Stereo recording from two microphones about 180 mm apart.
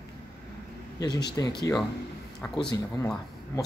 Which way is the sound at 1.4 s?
15° left (ahead or behind).